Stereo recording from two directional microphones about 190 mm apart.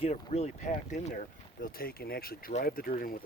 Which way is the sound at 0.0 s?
35° left (ahead or behind).